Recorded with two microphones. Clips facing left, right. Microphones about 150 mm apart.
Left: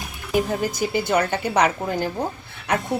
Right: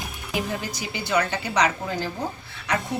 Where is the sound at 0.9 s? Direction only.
50° left (ahead or behind).